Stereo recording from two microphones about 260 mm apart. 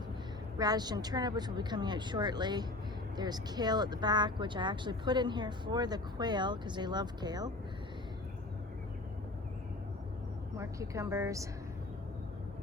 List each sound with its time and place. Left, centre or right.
0.6 s speech: centre
10.6 s speech: centre